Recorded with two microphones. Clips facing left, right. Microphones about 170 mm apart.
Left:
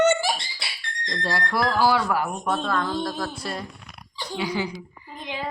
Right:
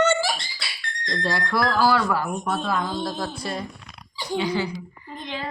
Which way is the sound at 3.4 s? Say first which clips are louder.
Right 2 dB; centre (ahead or behind).